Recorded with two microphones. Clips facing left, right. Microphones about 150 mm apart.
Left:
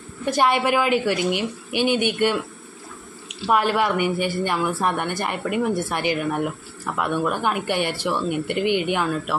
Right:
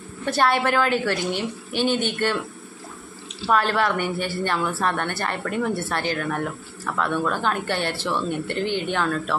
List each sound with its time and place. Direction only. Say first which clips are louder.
0.2 s speech: left 1 dB; 15° left (ahead or behind)